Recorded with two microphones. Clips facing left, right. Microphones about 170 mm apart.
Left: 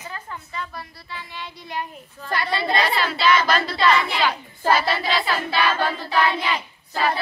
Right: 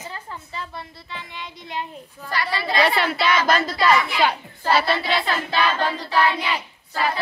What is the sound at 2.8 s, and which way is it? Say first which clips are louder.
Speech: right 1 dB; 60° right (ahead or behind).